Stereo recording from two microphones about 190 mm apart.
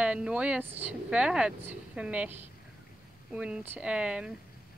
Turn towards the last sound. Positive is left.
turn(degrees=-5)  # may be behind; listen again after turning